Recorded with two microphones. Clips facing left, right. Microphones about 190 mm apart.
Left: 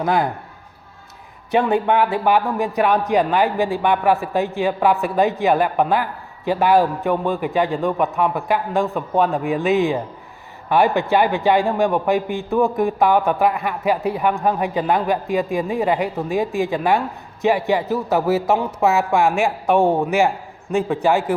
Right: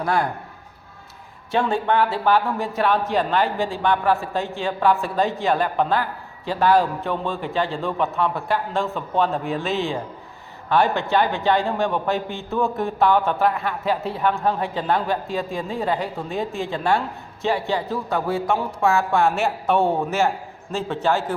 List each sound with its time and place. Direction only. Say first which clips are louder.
0.0 s a man's voice: left 3 dB; 20° left (ahead or behind)
1.5 s a man's voice: left 4 dB; 20° left (ahead or behind)